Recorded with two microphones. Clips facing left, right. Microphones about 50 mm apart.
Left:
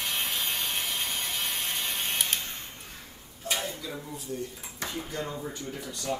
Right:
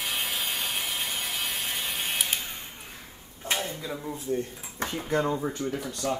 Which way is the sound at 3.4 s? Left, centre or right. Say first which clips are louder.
Right 2 dB; right.